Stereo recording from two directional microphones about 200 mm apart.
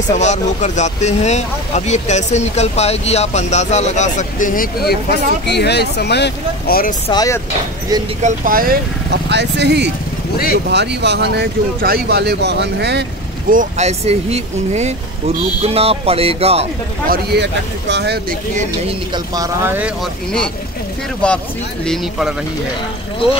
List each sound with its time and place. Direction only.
0.1 s speech: 35° left (ahead or behind)
7.1 s speech: 15° left (ahead or behind)
8.2 s speech: 40° right (ahead or behind)
9.3 s speech: 60° right (ahead or behind)
10.3 s speech: 50° left (ahead or behind)
10.7 s speech: 60° right (ahead or behind)
13.5 s speech: 40° right (ahead or behind)
17.1 s speech: 55° right (ahead or behind)
19.1 s speech: 15° right (ahead or behind)
21.2 s speech: 5° left (ahead or behind)